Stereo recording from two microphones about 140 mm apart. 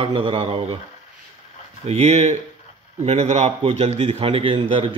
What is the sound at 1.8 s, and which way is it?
A man's voice, 50° right (ahead or behind).